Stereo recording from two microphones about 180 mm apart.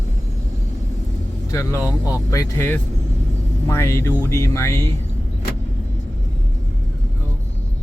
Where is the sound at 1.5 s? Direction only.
20° left (ahead or behind).